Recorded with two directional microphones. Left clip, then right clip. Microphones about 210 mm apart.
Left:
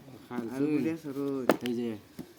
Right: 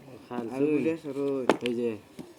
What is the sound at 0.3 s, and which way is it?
Speech, 25° left (ahead or behind).